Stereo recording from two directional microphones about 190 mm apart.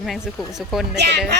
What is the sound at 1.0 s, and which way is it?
Speech, 65° right (ahead or behind).